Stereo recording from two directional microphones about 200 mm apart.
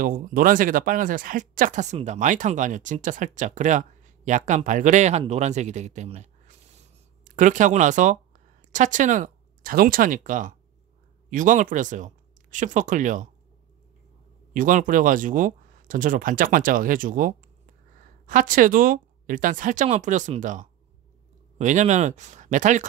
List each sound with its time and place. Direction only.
0.0 s speech: 45° right (ahead or behind)
14.5 s speech: 40° right (ahead or behind)